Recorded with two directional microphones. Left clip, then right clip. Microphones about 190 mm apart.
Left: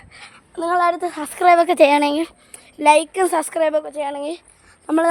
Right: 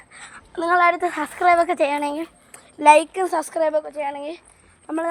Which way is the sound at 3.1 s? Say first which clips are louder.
Left 3 dB; 30° left (ahead or behind).